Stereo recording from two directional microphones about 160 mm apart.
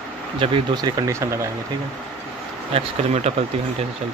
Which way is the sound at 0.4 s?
30° right (ahead or behind).